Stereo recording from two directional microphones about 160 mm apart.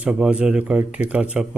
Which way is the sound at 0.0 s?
5° right (ahead or behind).